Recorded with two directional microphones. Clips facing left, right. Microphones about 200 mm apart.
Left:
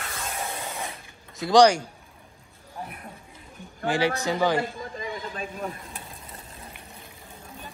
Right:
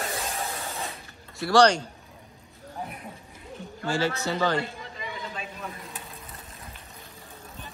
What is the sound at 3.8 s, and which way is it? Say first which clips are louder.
Speech: left 3 dB; 15° left (ahead or behind).